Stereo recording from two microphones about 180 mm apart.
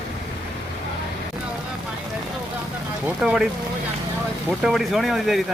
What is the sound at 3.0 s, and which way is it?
Speech, 5° right (ahead or behind).